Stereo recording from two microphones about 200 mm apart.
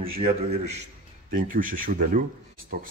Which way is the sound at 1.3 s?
45° right (ahead or behind).